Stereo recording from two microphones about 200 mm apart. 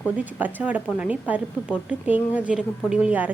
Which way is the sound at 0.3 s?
10° right (ahead or behind).